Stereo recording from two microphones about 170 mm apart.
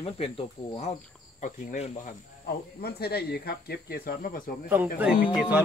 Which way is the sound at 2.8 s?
70° left (ahead or behind).